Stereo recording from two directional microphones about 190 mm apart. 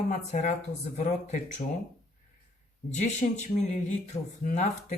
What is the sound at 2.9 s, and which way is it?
Speech, 40° left (ahead or behind).